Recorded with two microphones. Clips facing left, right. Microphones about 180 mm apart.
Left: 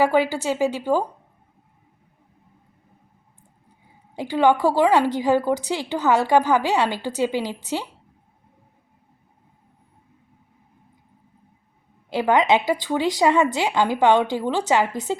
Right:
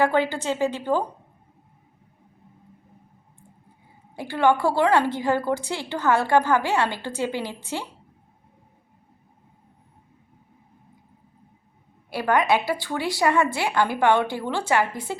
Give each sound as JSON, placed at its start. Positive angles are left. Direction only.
{"t": 0.0, "sound": "speech", "side_deg": 10}
{"t": 4.1, "sound": "speech", "side_deg": 15}
{"t": 12.1, "sound": "a woman's voice", "side_deg": 20}